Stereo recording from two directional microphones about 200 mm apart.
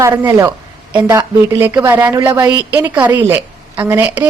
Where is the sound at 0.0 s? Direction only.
15° right (ahead or behind).